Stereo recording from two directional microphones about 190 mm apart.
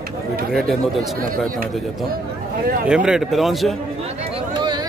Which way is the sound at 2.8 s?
5° right (ahead or behind).